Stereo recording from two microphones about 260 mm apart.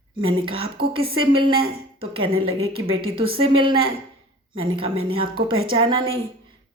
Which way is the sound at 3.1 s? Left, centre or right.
Right.